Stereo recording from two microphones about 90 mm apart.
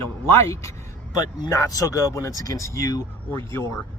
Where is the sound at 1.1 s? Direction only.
40° left (ahead or behind).